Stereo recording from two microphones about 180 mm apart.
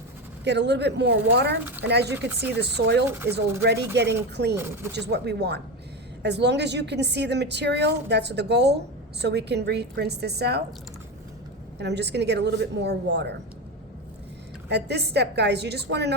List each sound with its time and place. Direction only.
0.4 s a woman's voice: 70° right (ahead or behind)
2.1 s speech: 10° right (ahead or behind)
2.6 s a woman's voice: 70° right (ahead or behind)
3.1 s speech: 10° right (ahead or behind)
3.3 s a woman's voice: 65° right (ahead or behind)
4.5 s speech: 15° right (ahead or behind)
4.9 s a woman's voice: 70° right (ahead or behind)
11.8 s a woman's voice: 70° right (ahead or behind)
14.7 s a woman's voice: 70° right (ahead or behind)